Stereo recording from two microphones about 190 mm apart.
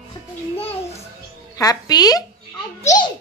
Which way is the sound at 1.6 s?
20° left (ahead or behind).